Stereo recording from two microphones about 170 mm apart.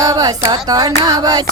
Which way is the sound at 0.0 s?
20° right (ahead or behind).